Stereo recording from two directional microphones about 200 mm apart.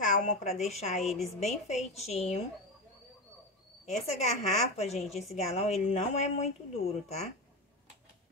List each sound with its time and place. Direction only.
0.0 s a woman's voice: 40° left (ahead or behind)
1.0 s a woman's voice: centre (ahead or behind)
1.4 s a woman's voice: 35° left (ahead or behind)
4.2 s a woman's voice: 35° left (ahead or behind)